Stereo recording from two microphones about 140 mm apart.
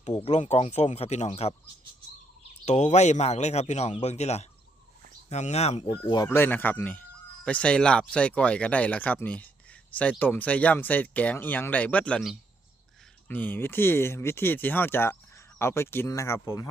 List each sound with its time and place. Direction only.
0.3 s speech: 50° left (ahead or behind)
2.6 s speech: 55° left (ahead or behind); by 6.2 s 35° left (ahead or behind)
6.2 s speech: 15° left (ahead or behind)